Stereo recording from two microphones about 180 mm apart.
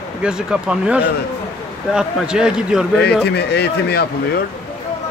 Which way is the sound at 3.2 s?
65° left (ahead or behind).